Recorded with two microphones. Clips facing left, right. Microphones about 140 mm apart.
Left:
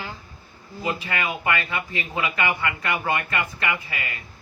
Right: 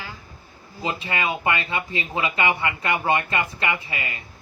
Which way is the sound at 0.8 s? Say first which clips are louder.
Right 1 dB; 25° right (ahead or behind).